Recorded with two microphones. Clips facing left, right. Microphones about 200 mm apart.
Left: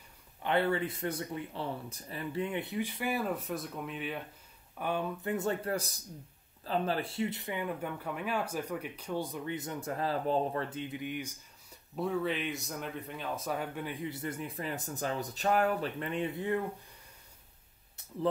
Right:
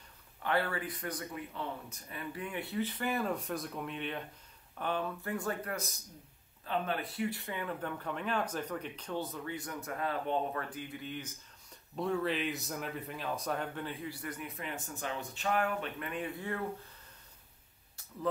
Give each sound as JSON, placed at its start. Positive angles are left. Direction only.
{"t": 0.4, "sound": "speech", "side_deg": 20}
{"t": 11.9, "sound": "speech", "side_deg": 0}